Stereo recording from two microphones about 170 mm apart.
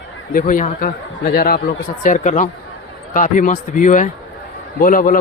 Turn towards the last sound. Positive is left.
turn(degrees=55)  # may be behind; listen again after turning